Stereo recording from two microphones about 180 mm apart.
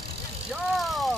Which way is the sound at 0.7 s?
Centre (ahead or behind).